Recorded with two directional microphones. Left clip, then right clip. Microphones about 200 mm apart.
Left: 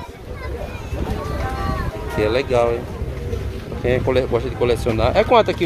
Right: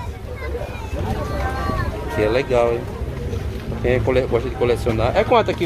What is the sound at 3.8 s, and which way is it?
Speech, 10° left (ahead or behind).